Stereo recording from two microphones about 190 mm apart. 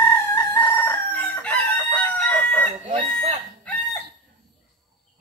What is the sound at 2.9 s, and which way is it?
Chicken, 25° right (ahead or behind).